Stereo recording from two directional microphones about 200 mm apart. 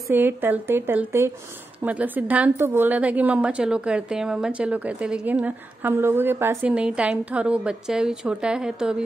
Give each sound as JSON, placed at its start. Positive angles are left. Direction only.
{"t": 0.1, "sound": "a woman's voice", "side_deg": -10}